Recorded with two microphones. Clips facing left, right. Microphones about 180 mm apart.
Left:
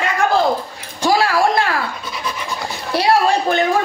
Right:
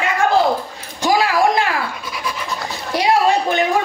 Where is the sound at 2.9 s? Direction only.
15° right (ahead or behind).